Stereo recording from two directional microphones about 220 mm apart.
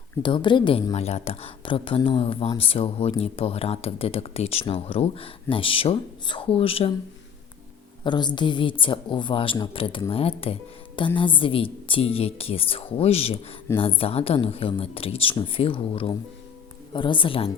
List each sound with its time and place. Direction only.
0.2 s speech: 20° left (ahead or behind)
8.0 s a woman's voice: 20° left (ahead or behind)